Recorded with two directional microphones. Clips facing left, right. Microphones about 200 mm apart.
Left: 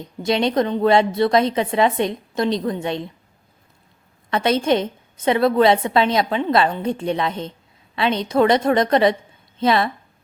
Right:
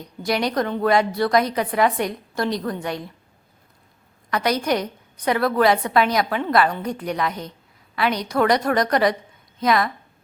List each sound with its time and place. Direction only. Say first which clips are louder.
0.0 s a woman's voice: left 3 dB; 25° left (ahead or behind)
4.3 s a woman's voice: left 3 dB; 25° left (ahead or behind)